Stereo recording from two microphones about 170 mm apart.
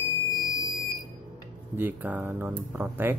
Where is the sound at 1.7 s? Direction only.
10° right (ahead or behind).